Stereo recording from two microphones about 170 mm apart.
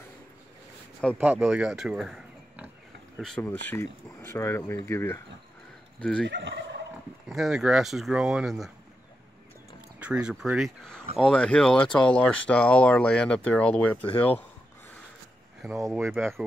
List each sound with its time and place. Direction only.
1.1 s speech: 10° right (ahead or behind); by 5.2 s 15° left (ahead or behind)
6.2 s fowl: 90° right
7.2 s speech: centre (ahead or behind)
9.9 s speech: 5° right (ahead or behind); by 14.4 s 10° left (ahead or behind)
16.1 s speech: 15° right (ahead or behind)